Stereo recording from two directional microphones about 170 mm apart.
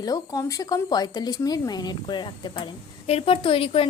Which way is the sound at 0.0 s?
20° left (ahead or behind).